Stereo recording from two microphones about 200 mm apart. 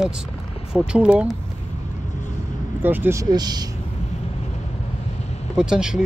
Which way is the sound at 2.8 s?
10° right (ahead or behind).